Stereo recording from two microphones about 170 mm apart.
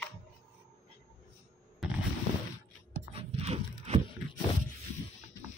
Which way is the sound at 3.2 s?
35° right (ahead or behind).